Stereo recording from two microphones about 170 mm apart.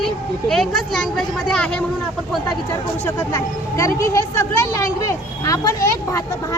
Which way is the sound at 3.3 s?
20° left (ahead or behind).